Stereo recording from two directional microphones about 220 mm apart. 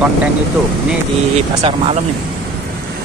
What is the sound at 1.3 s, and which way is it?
Speech, 25° right (ahead or behind).